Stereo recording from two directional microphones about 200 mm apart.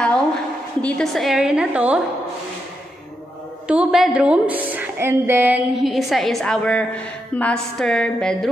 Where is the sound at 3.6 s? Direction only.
5° right (ahead or behind).